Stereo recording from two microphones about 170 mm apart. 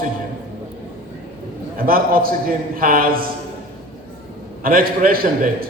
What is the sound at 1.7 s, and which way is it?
A man's voice, 60° right (ahead or behind).